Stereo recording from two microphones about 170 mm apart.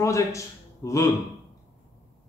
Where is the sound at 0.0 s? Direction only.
20° left (ahead or behind).